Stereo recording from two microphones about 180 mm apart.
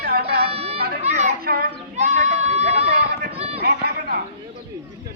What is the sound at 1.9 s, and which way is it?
Run, 40° right (ahead or behind).